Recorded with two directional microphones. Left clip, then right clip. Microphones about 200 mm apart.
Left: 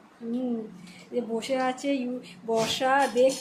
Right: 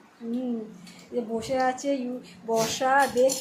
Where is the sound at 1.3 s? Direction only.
10° left (ahead or behind).